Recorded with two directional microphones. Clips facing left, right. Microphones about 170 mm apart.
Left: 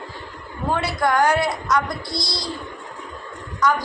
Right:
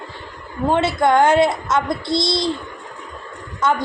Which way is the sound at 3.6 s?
25° right (ahead or behind).